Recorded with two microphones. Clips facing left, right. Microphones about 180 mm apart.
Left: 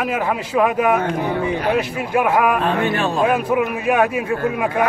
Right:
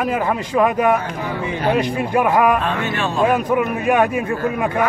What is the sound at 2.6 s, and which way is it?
Speech, 35° left (ahead or behind).